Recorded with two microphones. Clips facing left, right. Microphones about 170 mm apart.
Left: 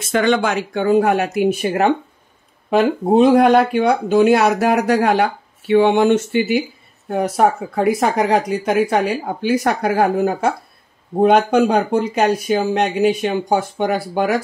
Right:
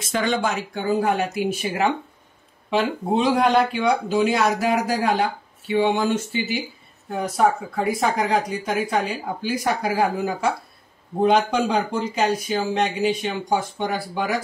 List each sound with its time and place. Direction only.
0.1 s speech: 70° left (ahead or behind)